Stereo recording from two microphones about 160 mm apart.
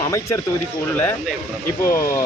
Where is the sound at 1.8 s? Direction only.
15° left (ahead or behind).